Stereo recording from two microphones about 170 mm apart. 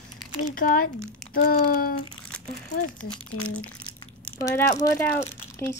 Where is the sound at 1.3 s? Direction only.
60° left (ahead or behind).